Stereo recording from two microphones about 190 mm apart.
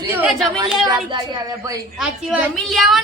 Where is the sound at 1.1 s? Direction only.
20° right (ahead or behind).